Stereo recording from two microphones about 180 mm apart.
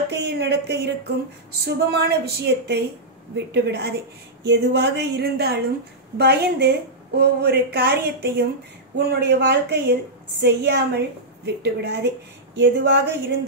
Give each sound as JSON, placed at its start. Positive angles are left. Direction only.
{"t": 0.1, "sound": "a woman's voice", "side_deg": -70}